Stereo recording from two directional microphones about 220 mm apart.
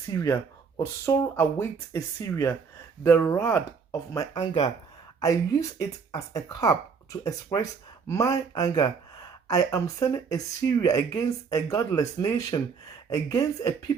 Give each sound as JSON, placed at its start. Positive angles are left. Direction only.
{"t": 0.1, "sound": "speech", "side_deg": 15}